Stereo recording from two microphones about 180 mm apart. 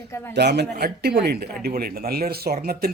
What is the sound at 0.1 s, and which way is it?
Speech, 10° left (ahead or behind).